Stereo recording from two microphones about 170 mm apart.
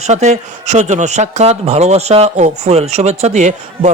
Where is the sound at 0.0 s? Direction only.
45° right (ahead or behind).